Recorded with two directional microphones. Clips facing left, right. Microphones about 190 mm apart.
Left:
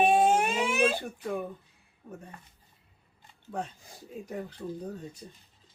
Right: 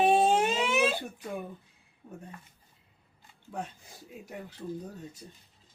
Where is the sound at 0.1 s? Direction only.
20° right (ahead or behind).